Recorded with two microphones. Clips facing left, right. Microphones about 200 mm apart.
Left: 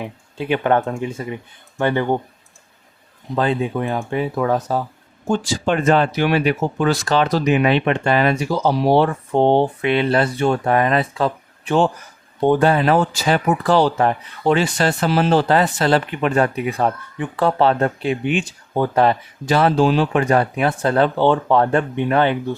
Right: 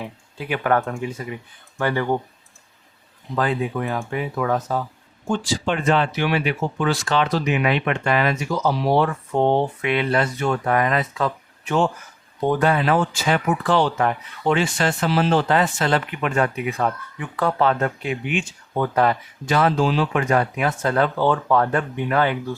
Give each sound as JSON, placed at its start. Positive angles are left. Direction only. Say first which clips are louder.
{"t": 0.0, "sound": "speech", "louder": "left 5 dB", "side_deg": 25}
{"t": 3.3, "sound": "speech", "louder": "left 3 dB", "side_deg": 25}